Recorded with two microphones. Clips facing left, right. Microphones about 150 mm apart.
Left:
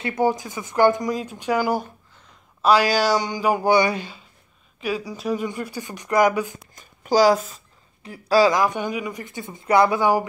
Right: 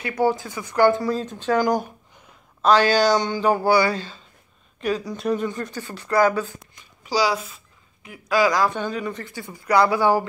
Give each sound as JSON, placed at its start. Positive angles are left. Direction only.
{"t": 0.0, "sound": "speech", "side_deg": 20}
{"t": 6.7, "sound": "a sound", "side_deg": 45}
{"t": 8.5, "sound": "speech", "side_deg": 15}